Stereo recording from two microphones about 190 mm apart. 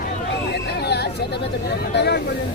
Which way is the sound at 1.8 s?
60° left (ahead or behind).